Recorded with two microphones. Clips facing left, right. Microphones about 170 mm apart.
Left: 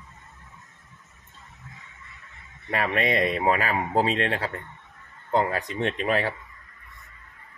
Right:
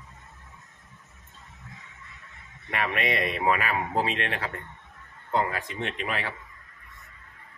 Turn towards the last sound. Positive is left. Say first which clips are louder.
# left 7 dB
turn(degrees=40)  # may be behind; listen again after turning